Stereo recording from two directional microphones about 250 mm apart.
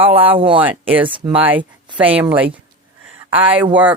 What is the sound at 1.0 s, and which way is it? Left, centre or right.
Speech, centre.